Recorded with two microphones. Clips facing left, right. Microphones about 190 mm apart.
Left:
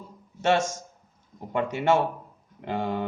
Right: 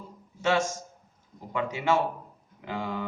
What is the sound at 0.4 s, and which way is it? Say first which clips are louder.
A man's voice: left 2 dB; 65° left (ahead or behind).